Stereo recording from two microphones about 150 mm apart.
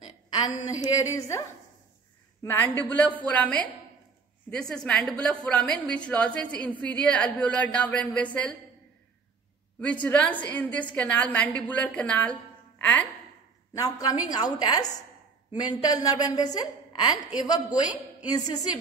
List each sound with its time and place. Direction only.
0.3 s a woman's voice: 25° left (ahead or behind)
2.4 s a woman's voice: 15° left (ahead or behind)
9.8 s a woman's voice: 10° left (ahead or behind)
13.8 s a woman's voice: 25° left (ahead or behind)
18.2 s a woman's voice: 25° left (ahead or behind)